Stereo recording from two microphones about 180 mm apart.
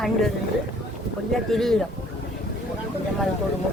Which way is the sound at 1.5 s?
Centre (ahead or behind).